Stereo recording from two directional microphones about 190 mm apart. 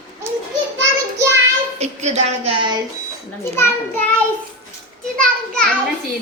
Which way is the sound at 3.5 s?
15° left (ahead or behind).